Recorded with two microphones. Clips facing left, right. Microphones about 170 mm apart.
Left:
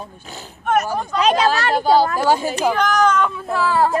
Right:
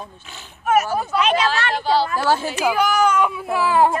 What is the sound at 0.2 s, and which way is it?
A woman's voice, 40° left (ahead or behind).